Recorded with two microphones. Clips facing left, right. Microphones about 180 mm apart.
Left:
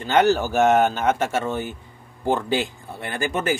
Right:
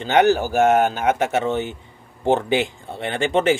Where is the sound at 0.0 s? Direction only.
15° right (ahead or behind).